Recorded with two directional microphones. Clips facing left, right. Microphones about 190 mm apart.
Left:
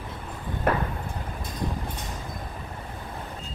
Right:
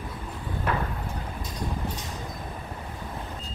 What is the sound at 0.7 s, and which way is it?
Clip-clop, 55° left (ahead or behind).